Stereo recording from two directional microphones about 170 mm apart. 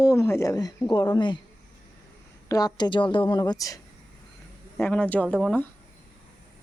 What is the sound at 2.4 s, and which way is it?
Speech, 20° left (ahead or behind).